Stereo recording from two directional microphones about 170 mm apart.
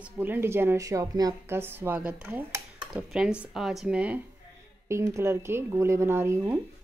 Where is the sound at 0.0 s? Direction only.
10° right (ahead or behind).